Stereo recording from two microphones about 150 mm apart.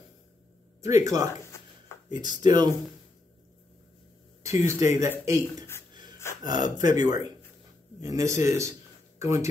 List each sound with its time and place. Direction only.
0.8 s speech: 20° right (ahead or behind)
4.4 s speech: 20° right (ahead or behind)
6.4 s speech: 25° right (ahead or behind)